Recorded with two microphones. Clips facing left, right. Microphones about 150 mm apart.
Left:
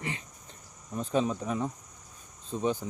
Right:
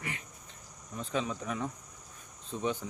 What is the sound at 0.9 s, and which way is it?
Speech, 40° left (ahead or behind).